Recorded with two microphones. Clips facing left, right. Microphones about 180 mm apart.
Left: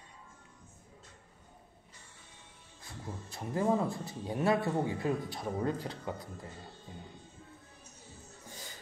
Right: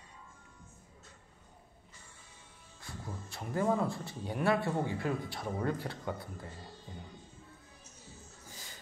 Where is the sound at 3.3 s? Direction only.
20° left (ahead or behind).